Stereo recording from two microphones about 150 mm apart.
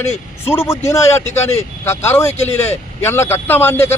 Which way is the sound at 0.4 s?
15° left (ahead or behind).